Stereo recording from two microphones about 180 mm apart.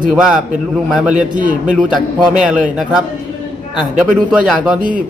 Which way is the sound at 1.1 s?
45° right (ahead or behind).